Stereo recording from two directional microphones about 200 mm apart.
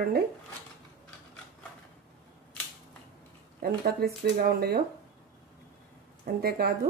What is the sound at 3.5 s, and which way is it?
Speech, 50° right (ahead or behind).